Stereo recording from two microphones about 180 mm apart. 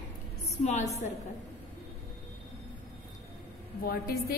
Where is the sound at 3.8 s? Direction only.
55° left (ahead or behind).